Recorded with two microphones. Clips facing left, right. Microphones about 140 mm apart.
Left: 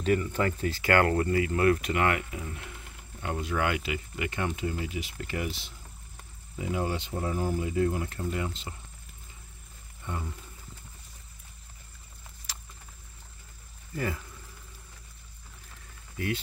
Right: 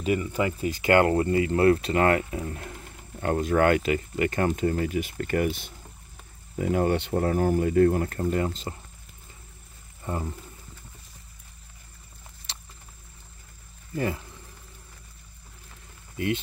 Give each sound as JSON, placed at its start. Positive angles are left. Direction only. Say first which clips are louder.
{"t": 0.0, "sound": "speech", "louder": "right 1 dB", "side_deg": -10}
{"t": 10.1, "sound": "speech", "louder": "right 6 dB", "side_deg": -35}
{"t": 13.9, "sound": "speech", "louder": "right 4 dB", "side_deg": -25}